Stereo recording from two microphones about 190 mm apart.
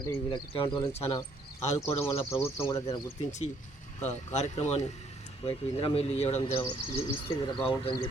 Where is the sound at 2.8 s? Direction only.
35° left (ahead or behind).